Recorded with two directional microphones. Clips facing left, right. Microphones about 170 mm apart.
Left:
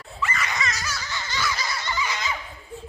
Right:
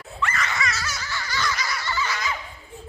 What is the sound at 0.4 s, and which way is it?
Baby laughter, 15° left (ahead or behind).